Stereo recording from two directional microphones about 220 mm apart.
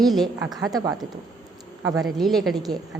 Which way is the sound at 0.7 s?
15° right (ahead or behind).